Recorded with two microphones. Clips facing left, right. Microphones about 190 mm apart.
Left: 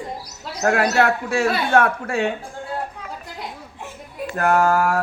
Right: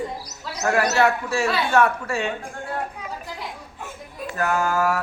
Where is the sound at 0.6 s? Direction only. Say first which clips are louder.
Left 1 dB; 60° left (ahead or behind).